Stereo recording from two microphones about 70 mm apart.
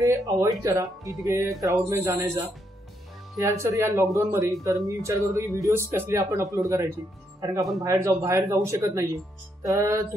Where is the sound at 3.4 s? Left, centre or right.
Right.